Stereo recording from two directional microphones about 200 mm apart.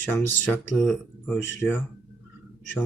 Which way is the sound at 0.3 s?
5° left (ahead or behind).